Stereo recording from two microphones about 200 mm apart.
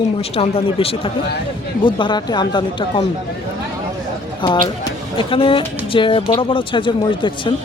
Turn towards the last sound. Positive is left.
turn(degrees=25)  # may be behind; listen again after turning